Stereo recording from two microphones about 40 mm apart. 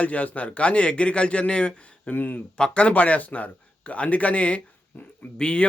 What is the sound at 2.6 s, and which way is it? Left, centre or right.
Speech, left.